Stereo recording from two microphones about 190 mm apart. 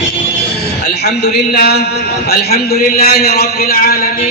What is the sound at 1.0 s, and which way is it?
A man's voice, 60° left (ahead or behind).